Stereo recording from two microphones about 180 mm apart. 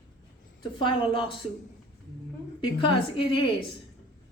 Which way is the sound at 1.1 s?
30° left (ahead or behind).